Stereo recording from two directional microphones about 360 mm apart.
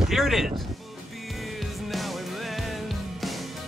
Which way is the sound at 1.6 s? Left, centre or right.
Centre.